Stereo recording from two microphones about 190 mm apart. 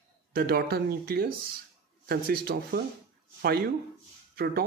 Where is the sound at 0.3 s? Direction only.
55° right (ahead or behind).